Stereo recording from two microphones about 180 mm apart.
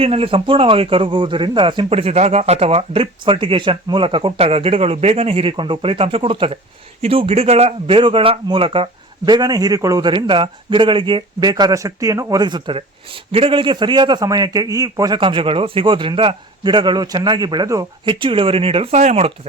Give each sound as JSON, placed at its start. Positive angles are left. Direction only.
{"t": 0.0, "sound": "a man's voice", "side_deg": -30}